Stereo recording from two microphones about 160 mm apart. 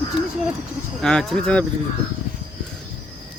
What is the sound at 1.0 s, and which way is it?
Speech, centre (ahead or behind).